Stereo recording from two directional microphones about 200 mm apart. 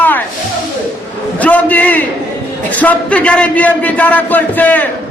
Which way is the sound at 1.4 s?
5° left (ahead or behind).